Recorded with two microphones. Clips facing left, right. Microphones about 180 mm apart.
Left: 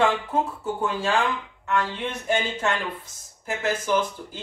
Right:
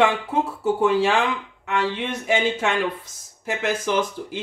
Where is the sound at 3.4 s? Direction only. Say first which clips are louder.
Right 2 dB; 90° right.